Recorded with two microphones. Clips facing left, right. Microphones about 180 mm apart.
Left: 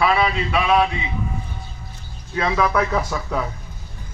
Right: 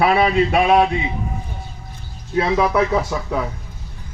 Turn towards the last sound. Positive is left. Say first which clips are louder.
# right 3 dB
turn(degrees=-15)  # may be behind; listen again after turning